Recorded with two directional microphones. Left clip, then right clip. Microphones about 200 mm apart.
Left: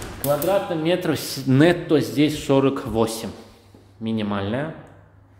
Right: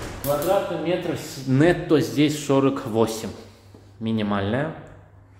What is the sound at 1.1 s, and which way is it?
Speech, 55° left (ahead or behind).